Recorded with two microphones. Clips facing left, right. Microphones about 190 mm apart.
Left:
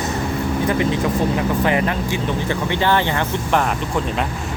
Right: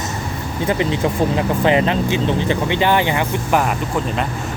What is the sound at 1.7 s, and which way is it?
Speech, 25° right (ahead or behind).